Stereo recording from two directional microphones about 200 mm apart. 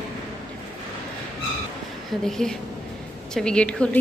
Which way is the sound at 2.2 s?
Centre (ahead or behind).